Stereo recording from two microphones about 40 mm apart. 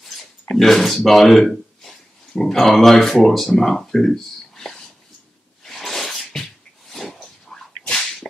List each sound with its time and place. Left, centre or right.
0.0 s a sound: centre
2.5 s speech: centre
5.6 s sneeze: centre
7.5 s whip: centre